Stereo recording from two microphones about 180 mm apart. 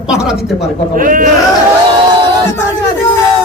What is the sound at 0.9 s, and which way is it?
Speech, 50° right (ahead or behind).